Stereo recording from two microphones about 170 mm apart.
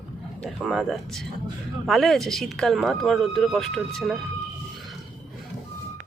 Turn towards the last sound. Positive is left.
turn(degrees=0)  # may be behind; listen again after turning